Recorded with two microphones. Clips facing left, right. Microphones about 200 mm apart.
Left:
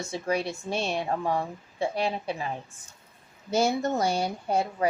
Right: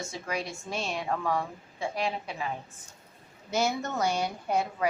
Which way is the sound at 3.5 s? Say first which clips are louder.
Left 4 dB; 30° left (ahead or behind).